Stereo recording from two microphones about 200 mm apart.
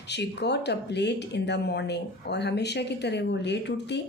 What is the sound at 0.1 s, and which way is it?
A woman's voice, 60° left (ahead or behind).